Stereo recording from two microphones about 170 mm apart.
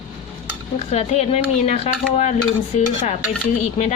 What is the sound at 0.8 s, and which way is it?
Speech, 40° left (ahead or behind).